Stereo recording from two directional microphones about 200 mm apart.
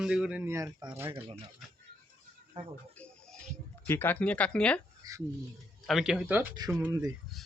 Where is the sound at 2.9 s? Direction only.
5° left (ahead or behind).